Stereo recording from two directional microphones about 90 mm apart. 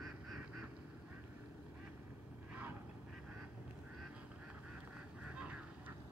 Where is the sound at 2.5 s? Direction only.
20° right (ahead or behind).